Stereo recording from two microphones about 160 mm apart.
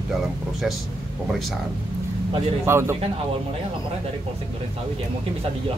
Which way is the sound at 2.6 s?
15° right (ahead or behind).